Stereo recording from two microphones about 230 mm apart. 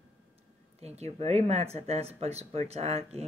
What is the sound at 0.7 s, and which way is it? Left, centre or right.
Speech, right.